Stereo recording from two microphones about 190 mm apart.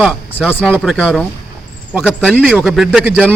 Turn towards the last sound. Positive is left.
turn(degrees=-10)  # may be behind; listen again after turning